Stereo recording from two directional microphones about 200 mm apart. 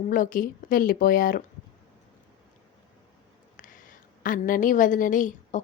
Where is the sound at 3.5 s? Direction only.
40° left (ahead or behind).